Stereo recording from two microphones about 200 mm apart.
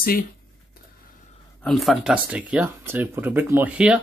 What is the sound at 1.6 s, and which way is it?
Speech, centre (ahead or behind).